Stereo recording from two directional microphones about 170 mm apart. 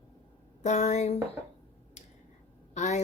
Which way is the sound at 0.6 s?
45° left (ahead or behind).